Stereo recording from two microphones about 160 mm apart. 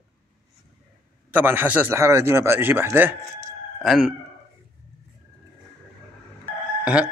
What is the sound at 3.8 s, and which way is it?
Sigh, centre (ahead or behind).